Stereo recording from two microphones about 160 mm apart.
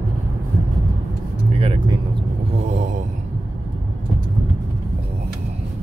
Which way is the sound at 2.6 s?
45° right (ahead or behind).